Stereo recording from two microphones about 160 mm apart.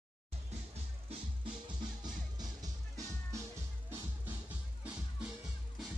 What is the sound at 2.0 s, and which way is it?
Music, 25° right (ahead or behind).